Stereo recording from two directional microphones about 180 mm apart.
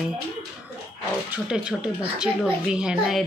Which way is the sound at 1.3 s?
5° right (ahead or behind).